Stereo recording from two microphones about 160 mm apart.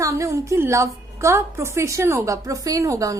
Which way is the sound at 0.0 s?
20° right (ahead or behind).